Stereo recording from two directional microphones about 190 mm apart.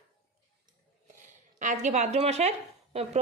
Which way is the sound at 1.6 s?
40° right (ahead or behind).